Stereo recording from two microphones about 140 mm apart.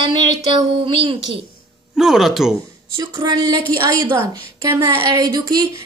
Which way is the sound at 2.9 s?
30° right (ahead or behind).